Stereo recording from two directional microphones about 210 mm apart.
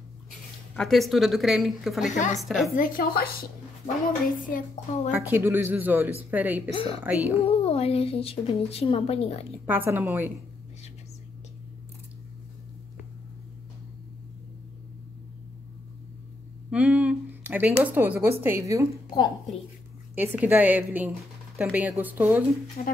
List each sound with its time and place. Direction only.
0.7 s a woman's voice: centre (ahead or behind)
2.7 s a child's voice: 40° left (ahead or behind)
5.1 s speech: 10° right (ahead or behind)
6.7 s a woman's voice: 25° left (ahead or behind)
7.0 s speech: 10° right (ahead or behind)
7.4 s a woman's voice: 30° left (ahead or behind)
9.7 s speech: 10° right (ahead or behind)
16.7 s speech: 5° right (ahead or behind)
20.2 s speech: 10° right (ahead or behind)
22.8 s a child's voice: 40° left (ahead or behind)